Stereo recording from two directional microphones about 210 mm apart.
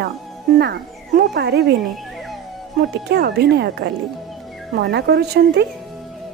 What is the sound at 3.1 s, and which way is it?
Speech, 50° right (ahead or behind).